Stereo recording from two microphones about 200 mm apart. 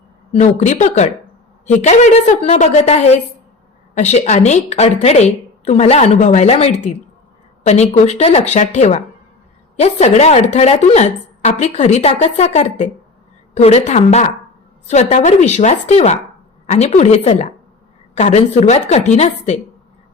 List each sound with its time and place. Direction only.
0.3 s a woman's voice: 35° left (ahead or behind)